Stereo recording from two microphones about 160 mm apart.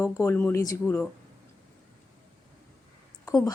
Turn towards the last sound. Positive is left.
turn(degrees=20)  # may be behind; listen again after turning